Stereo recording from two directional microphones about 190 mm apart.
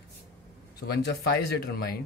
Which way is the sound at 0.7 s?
60° left (ahead or behind).